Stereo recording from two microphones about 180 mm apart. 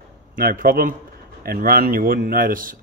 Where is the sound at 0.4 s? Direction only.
55° right (ahead or behind).